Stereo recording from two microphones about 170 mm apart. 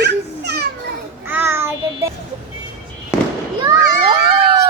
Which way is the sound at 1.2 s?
15° right (ahead or behind).